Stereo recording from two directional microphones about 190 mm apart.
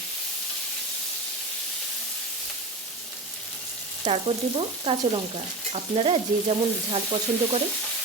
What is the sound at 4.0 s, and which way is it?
Frying, 30° right (ahead or behind).